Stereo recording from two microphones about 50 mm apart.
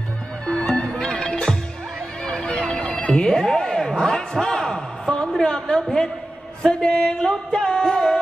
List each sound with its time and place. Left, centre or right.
0.7 s music: centre
2.7 s a sound: centre
6.6 s music: centre